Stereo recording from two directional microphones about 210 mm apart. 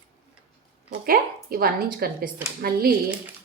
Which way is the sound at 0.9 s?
45° right (ahead or behind).